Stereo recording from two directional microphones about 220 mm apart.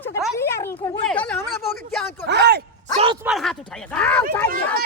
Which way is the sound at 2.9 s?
25° right (ahead or behind).